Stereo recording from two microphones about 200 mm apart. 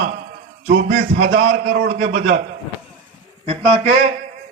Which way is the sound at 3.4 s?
30° right (ahead or behind).